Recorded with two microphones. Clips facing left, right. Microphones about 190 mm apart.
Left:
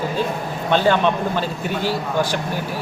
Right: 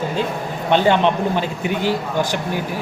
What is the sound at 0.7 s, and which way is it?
A man's voice, 20° right (ahead or behind).